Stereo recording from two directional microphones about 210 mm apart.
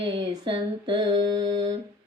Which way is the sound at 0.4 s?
25° right (ahead or behind).